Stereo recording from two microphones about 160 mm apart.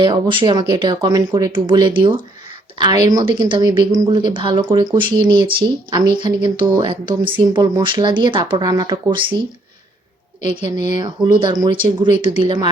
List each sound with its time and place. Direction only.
0.0 s a woman's voice: 30° right (ahead or behind)